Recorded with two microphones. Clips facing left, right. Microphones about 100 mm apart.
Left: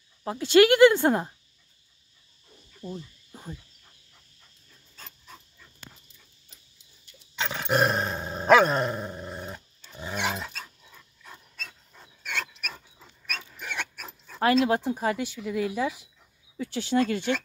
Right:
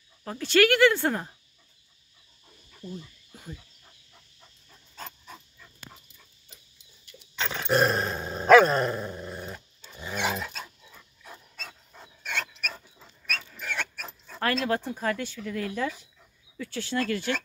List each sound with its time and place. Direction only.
0.2 s speech: 20° left (ahead or behind)
2.8 s dog: 30° left (ahead or behind)
7.3 s dog: 15° left (ahead or behind)
12.2 s dog: 5° left (ahead or behind)
14.4 s speech: 15° left (ahead or behind)